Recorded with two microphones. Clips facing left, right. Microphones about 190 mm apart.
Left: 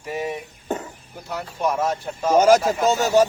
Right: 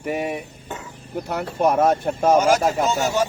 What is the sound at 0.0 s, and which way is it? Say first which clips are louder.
Speech: right 3 dB; 65° right (ahead or behind).